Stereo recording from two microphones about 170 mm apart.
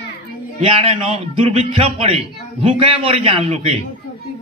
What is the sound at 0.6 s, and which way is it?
A man's voice, 35° right (ahead or behind).